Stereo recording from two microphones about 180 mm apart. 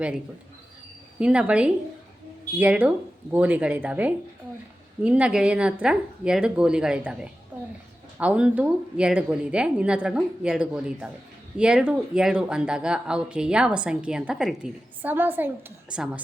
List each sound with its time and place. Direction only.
1.2 s a woman's voice: 5° right (ahead or behind)